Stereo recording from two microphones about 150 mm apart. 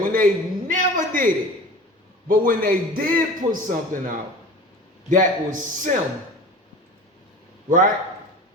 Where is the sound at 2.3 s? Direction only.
75° right (ahead or behind).